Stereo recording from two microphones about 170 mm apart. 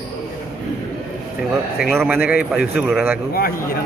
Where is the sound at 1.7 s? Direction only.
Centre (ahead or behind).